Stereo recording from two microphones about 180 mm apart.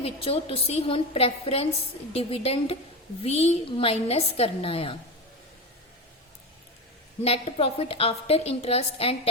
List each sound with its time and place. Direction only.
0.0 s a woman's voice: 30° left (ahead or behind)
7.2 s a woman's voice: 35° left (ahead or behind)